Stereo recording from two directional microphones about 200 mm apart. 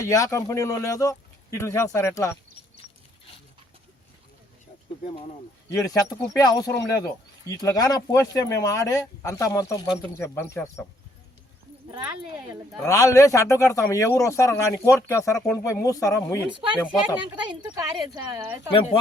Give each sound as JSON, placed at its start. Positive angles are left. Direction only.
{"t": 0.0, "sound": "speech", "side_deg": 15}
{"t": 5.8, "sound": "speech", "side_deg": 20}
{"t": 12.8, "sound": "speech", "side_deg": 15}
{"t": 17.7, "sound": "speech", "side_deg": -15}
{"t": 18.7, "sound": "speech", "side_deg": 25}